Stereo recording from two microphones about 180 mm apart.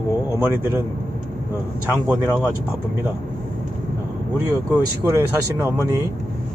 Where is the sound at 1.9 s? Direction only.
10° right (ahead or behind).